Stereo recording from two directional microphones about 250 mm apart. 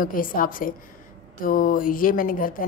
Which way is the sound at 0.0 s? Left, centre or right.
Left.